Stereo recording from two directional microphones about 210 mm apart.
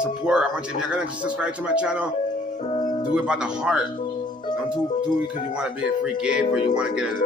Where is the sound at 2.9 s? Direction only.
20° left (ahead or behind).